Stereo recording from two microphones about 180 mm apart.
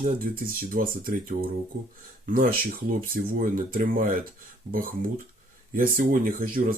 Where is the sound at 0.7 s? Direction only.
50° right (ahead or behind).